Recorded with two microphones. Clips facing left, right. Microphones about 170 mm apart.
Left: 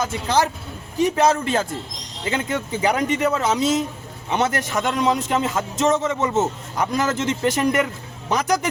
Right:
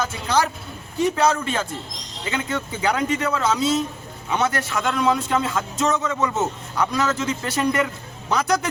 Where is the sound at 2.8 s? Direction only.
20° left (ahead or behind).